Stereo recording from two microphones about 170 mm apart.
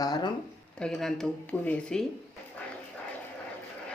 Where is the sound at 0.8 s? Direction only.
Centre (ahead or behind).